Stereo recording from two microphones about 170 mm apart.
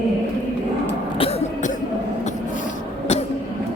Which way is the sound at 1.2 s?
35° left (ahead or behind).